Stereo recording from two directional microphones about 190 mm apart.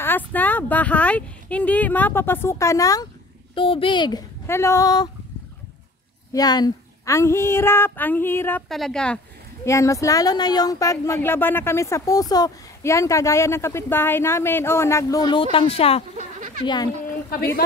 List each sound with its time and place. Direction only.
0.0 s speech: 10° left (ahead or behind)
3.5 s speech: 30° left (ahead or behind)
6.3 s speech: 20° left (ahead or behind); by 9.2 s 5° left (ahead or behind)
9.7 s speech: 15° left (ahead or behind)
16.2 s a sound: 45° right (ahead or behind)
16.6 s speech: 20° left (ahead or behind)